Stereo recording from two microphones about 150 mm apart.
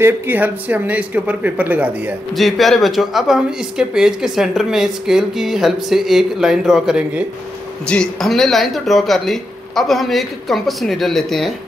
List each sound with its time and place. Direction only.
0.0 s speech: 10° right (ahead or behind)
2.3 s speech: centre (ahead or behind)
7.8 s speech: 5° left (ahead or behind)